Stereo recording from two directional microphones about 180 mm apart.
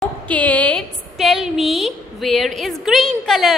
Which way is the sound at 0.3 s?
10° left (ahead or behind).